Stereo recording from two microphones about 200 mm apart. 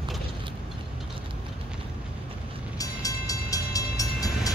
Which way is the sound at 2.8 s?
15° left (ahead or behind).